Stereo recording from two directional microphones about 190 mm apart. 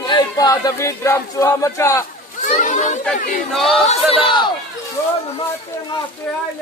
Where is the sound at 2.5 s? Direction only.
40° left (ahead or behind).